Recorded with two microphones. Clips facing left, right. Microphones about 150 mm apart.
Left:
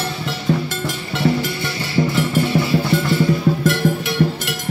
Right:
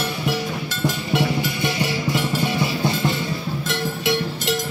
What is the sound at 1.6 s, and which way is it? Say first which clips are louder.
Music: left 2 dB; 20° right (ahead or behind).